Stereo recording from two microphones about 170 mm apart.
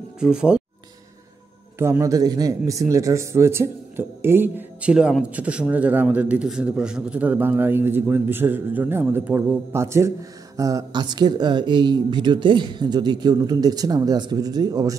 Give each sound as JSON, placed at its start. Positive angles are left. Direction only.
{"t": 0.2, "sound": "speech", "side_deg": -5}
{"t": 1.8, "sound": "a man's voice", "side_deg": -15}